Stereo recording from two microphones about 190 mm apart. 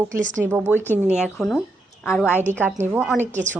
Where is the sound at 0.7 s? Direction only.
10° left (ahead or behind).